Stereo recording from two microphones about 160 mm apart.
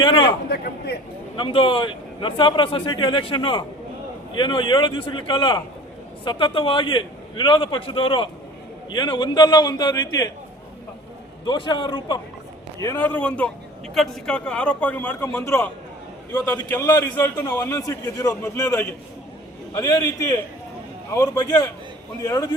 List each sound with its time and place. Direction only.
0.0 s a sound: 30° left (ahead or behind)
0.5 s speech: 80° left
1.4 s a man's voice: 35° left (ahead or behind)
11.4 s a man's voice: 30° left (ahead or behind)
12.8 s a man's voice: 15° left (ahead or behind)